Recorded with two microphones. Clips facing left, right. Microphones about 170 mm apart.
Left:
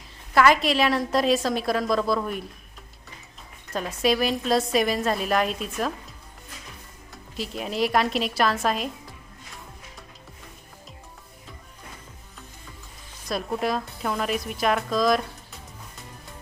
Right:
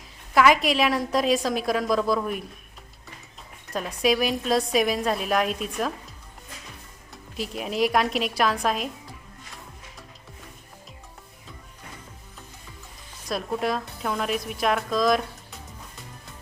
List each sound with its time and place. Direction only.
0.3 s a woman's voice: centre (ahead or behind)
3.7 s a woman's voice: centre (ahead or behind)
7.3 s a woman's voice: centre (ahead or behind)
13.2 s a woman's voice: centre (ahead or behind)